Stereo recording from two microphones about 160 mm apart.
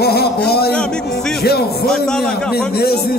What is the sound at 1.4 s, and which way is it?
Speech, 80° left.